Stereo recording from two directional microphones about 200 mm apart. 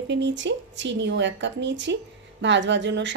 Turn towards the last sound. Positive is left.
turn(degrees=-65)  # may be behind; listen again after turning